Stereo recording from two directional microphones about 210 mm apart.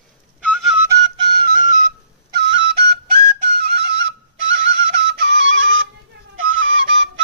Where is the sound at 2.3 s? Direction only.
60° right (ahead or behind).